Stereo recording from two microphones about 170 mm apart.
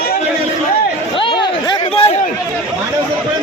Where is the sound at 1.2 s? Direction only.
25° left (ahead or behind).